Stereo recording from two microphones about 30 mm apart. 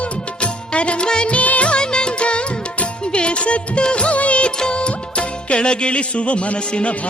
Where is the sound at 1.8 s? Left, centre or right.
Left.